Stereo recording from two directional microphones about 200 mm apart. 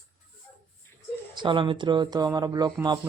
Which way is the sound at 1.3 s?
25° right (ahead or behind).